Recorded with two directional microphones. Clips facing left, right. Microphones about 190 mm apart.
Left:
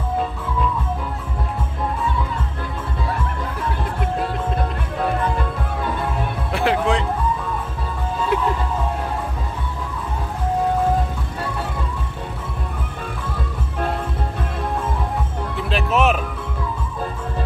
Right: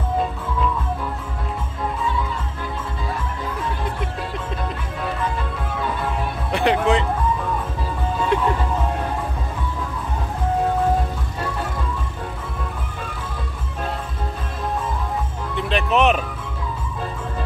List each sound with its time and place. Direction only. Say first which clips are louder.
6.5 s music: right 1 dB; centre (ahead or behind)
8.3 s music: even; 5° left (ahead or behind)
15.5 s music: right 1 dB; centre (ahead or behind)